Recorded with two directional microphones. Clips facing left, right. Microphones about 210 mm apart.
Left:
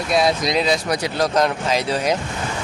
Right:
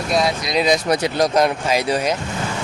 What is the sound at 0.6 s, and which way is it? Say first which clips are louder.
Speech: right 3 dB; 20° right (ahead or behind).